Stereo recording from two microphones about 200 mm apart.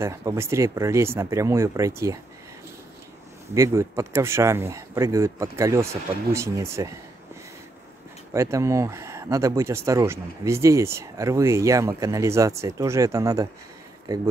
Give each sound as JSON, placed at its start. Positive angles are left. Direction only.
{"t": 0.0, "sound": "speech", "side_deg": -15}
{"t": 3.5, "sound": "speech", "side_deg": -15}
{"t": 8.3, "sound": "speech", "side_deg": -15}